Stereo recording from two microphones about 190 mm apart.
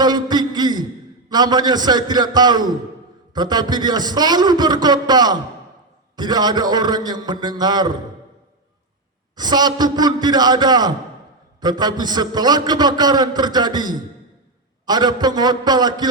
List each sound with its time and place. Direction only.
0.0 s a sound: 20° right (ahead or behind)
1.3 s a man's voice: 20° right (ahead or behind)
9.3 s a man's voice: 20° right (ahead or behind)